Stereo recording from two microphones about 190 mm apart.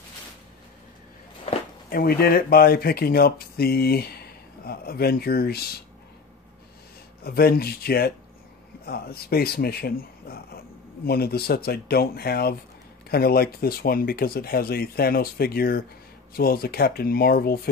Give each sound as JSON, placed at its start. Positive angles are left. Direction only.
{"t": 1.9, "sound": "speech", "side_deg": 55}
{"t": 7.2, "sound": "speech", "side_deg": 55}